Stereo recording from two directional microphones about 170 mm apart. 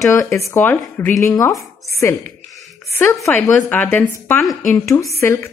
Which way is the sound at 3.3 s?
10° left (ahead or behind).